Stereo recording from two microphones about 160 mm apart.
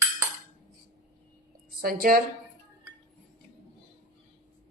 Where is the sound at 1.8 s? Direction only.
65° right (ahead or behind).